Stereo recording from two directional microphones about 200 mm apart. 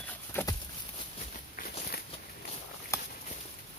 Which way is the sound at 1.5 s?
45° left (ahead or behind).